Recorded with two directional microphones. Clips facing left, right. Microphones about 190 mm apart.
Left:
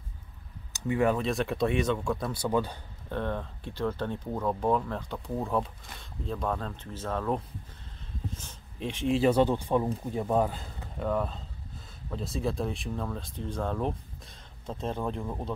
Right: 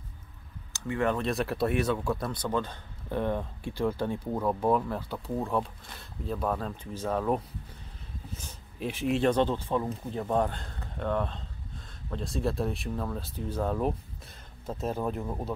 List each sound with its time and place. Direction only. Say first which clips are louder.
0.7 s speech: left 3 dB; 15° left (ahead or behind)
1.1 s speech: even; centre (ahead or behind)
3.1 s speech: right 3 dB; 10° right (ahead or behind)